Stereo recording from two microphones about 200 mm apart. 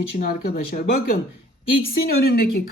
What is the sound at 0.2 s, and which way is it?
Speech, 45° left (ahead or behind).